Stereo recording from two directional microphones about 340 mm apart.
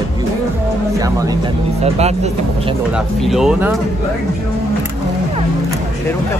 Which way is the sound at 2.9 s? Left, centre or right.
Centre.